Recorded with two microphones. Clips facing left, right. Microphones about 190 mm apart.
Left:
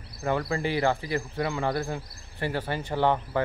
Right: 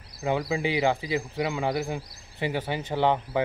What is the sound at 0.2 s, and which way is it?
Speech, 15° right (ahead or behind).